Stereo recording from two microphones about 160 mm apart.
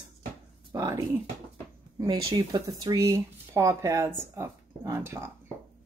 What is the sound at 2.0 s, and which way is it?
Speech, 25° right (ahead or behind).